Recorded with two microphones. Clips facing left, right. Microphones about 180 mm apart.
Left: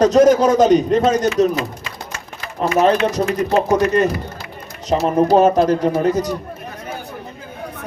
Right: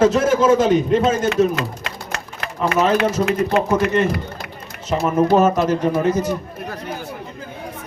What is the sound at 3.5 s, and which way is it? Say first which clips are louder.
A man's voice: left 4 dB; 35° left (ahead or behind).